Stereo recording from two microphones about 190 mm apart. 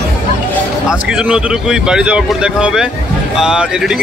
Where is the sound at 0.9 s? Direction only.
5° right (ahead or behind).